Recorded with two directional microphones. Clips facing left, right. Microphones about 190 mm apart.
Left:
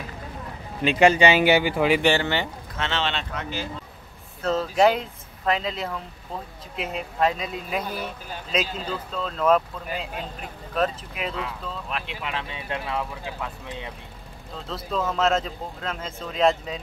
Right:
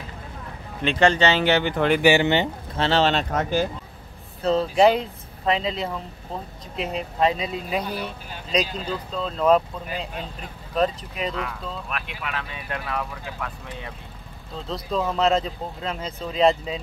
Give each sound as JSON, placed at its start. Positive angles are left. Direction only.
{"t": 0.8, "sound": "speech", "side_deg": 10}
{"t": 2.0, "sound": "speech", "side_deg": -10}
{"t": 2.8, "sound": "speech", "side_deg": -40}
{"t": 4.5, "sound": "speech", "side_deg": 0}
{"t": 11.9, "sound": "speech", "side_deg": 25}
{"t": 14.7, "sound": "speech", "side_deg": 0}